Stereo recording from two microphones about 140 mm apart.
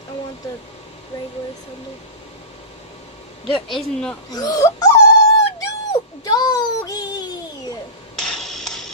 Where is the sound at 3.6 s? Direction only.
Centre (ahead or behind).